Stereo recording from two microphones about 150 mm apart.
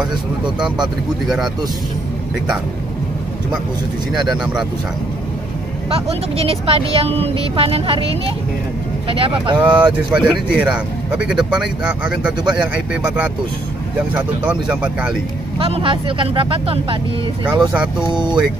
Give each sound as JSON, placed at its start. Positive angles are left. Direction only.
{"t": 1.2, "sound": "speech", "side_deg": 0}
{"t": 4.1, "sound": "speech", "side_deg": 0}
{"t": 5.9, "sound": "speech", "side_deg": -40}
{"t": 9.6, "sound": "speech", "side_deg": -10}
{"t": 15.6, "sound": "speech", "side_deg": -35}
{"t": 17.5, "sound": "speech", "side_deg": -5}
{"t": 18.0, "sound": "speech", "side_deg": -30}